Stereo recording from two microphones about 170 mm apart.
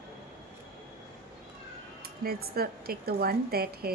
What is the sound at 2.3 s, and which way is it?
A woman's voice, 65° right (ahead or behind).